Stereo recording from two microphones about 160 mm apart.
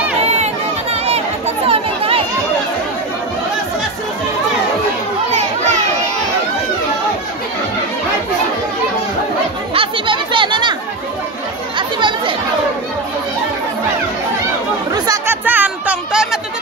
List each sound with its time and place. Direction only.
0.2 s run: 40° right (ahead or behind)
1.0 s chatter: 40° right (ahead or behind)
5.3 s children playing: 45° right (ahead or behind)
9.8 s chatter: 35° right (ahead or behind)
12.0 s chatter: 30° right (ahead or behind)
14.9 s chatter: 25° right (ahead or behind)
15.4 s music: 10° right (ahead or behind)